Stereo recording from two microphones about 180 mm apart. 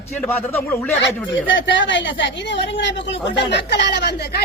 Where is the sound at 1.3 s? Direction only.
90° left; by 4.4 s 65° left (ahead or behind).